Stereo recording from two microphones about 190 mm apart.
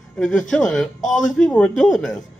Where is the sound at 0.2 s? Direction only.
Centre (ahead or behind).